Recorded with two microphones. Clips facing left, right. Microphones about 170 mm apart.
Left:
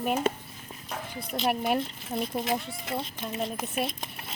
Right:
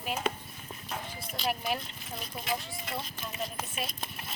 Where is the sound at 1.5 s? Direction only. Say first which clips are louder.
Left 6 dB; 60° left (ahead or behind).